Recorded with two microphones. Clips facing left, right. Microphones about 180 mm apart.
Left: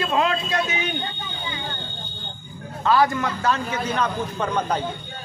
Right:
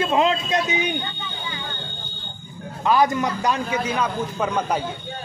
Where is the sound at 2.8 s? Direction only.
15° right (ahead or behind).